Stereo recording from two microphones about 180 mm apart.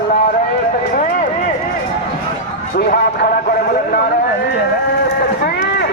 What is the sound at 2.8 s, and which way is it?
Speech, 55° left (ahead or behind).